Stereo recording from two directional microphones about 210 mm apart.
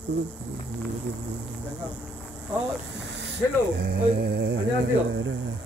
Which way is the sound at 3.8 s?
50° right (ahead or behind).